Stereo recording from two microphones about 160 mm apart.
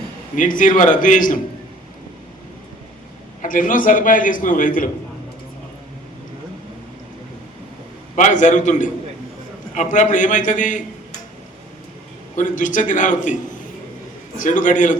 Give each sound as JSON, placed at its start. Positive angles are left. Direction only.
{"t": 0.3, "sound": "a man's voice", "side_deg": 55}
{"t": 3.4, "sound": "a man's voice", "side_deg": 55}
{"t": 8.1, "sound": "a man's voice", "side_deg": 50}
{"t": 12.4, "sound": "a man's voice", "side_deg": 55}